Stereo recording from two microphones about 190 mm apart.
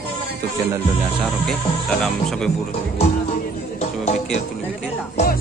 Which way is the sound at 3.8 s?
35° left (ahead or behind).